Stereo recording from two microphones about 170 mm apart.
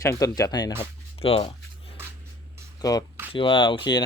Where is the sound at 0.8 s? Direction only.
35° left (ahead or behind).